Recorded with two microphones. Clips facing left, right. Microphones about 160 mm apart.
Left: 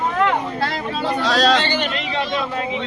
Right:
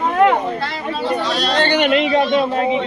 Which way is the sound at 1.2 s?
90° left.